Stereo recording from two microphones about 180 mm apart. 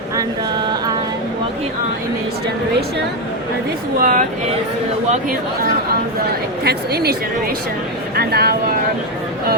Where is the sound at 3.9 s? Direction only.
50° right (ahead or behind).